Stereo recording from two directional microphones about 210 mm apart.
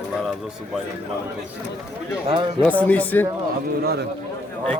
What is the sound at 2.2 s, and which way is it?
Speech, 25° right (ahead or behind).